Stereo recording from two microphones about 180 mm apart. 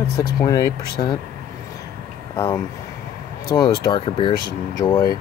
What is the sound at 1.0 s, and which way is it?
Speech, 30° left (ahead or behind).